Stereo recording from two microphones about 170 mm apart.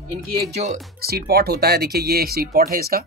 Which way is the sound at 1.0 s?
65° right (ahead or behind).